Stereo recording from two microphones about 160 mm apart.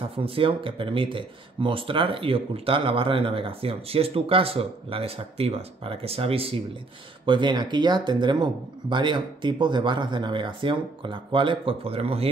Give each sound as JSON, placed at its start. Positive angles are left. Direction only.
{"t": 0.2, "sound": "speech", "side_deg": -35}